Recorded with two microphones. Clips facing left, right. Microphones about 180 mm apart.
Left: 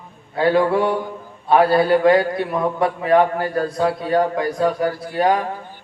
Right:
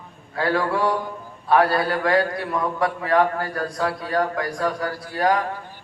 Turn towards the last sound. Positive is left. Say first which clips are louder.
# left 3 dB
turn(degrees=20)  # may be behind; listen again after turning